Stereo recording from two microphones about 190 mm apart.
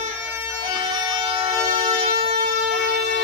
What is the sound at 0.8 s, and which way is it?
Vehicle, 25° right (ahead or behind).